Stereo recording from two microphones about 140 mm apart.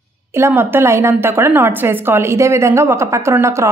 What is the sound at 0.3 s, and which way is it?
A woman's voice, 15° right (ahead or behind).